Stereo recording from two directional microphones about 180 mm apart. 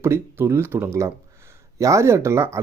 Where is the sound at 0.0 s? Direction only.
15° right (ahead or behind).